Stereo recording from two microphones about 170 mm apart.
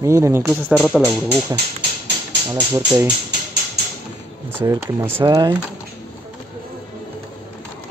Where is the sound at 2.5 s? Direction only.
15° right (ahead or behind).